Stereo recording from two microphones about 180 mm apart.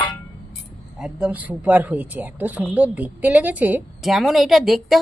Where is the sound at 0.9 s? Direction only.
5° right (ahead or behind).